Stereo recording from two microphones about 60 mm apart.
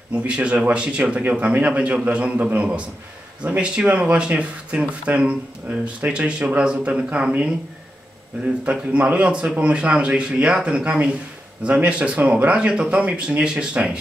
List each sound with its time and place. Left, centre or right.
0.1 s speech: right
8.6 s a man's voice: centre